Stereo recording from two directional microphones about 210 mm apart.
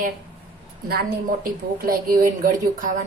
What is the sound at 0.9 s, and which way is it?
A woman's voice, 45° right (ahead or behind).